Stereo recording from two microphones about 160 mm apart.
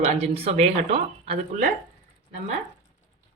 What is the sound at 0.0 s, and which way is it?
Speech, 40° right (ahead or behind).